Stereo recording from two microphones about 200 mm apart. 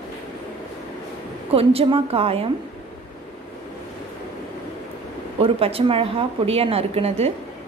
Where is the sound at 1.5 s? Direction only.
30° right (ahead or behind).